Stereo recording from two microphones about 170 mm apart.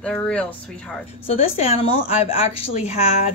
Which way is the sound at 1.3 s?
35° left (ahead or behind).